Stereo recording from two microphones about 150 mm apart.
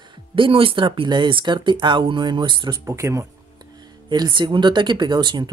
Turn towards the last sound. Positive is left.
turn(degrees=-30)  # may be behind; listen again after turning